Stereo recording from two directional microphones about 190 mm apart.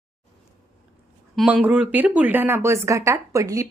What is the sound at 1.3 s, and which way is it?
A woman's voice, 5° right (ahead or behind).